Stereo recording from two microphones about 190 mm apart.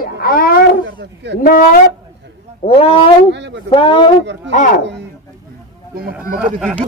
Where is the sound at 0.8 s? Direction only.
65° right (ahead or behind).